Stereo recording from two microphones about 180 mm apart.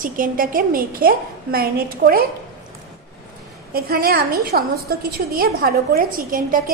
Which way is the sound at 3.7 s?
55° right (ahead or behind).